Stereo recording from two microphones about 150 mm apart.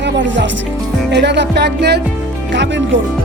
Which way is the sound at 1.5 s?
90° right.